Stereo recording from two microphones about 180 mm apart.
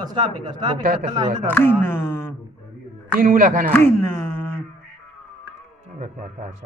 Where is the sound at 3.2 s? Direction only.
50° right (ahead or behind).